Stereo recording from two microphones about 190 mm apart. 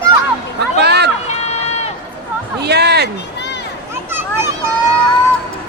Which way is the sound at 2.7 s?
60° right (ahead or behind).